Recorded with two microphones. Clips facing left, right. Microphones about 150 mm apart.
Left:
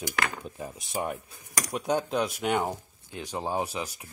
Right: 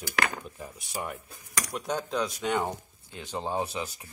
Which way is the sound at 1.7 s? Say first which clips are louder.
Left 5 dB; 15° left (ahead or behind).